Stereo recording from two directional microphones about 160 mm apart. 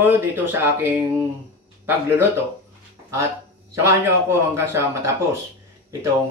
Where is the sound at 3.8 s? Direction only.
15° right (ahead or behind).